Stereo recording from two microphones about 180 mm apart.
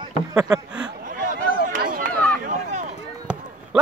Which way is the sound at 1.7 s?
50° right (ahead or behind).